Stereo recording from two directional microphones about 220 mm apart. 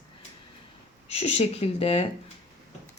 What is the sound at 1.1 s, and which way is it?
Speech, 30° left (ahead or behind).